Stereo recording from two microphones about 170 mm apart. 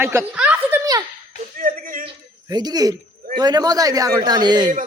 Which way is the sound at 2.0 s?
25° right (ahead or behind).